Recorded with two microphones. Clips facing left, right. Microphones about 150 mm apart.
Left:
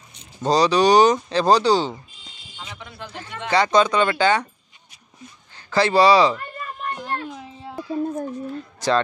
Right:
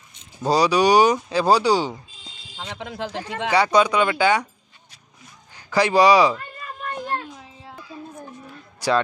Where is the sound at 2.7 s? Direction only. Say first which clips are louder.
Right 9 dB; 90° right.